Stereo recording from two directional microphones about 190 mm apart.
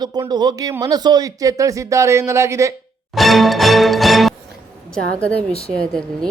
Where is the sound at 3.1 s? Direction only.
Centre (ahead or behind).